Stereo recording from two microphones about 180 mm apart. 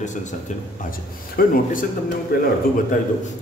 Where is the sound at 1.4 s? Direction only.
50° left (ahead or behind).